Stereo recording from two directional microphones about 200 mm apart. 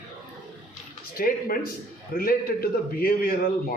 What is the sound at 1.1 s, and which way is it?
A man's voice, 45° left (ahead or behind).